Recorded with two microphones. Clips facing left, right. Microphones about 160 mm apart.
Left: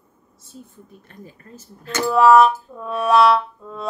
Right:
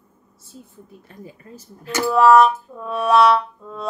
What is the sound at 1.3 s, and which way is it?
Speech, 10° right (ahead or behind).